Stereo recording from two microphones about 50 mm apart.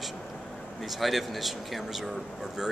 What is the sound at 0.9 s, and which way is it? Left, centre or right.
Speech, centre.